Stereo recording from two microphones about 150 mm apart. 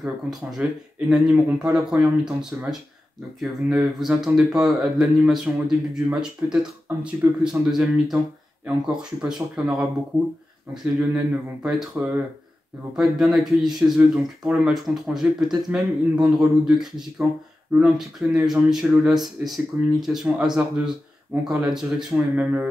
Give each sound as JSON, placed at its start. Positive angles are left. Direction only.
{"t": 0.0, "sound": "speech", "side_deg": -5}
{"t": 11.6, "sound": "speech", "side_deg": -5}